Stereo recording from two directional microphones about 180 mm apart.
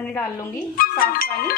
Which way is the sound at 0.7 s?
55° left (ahead or behind).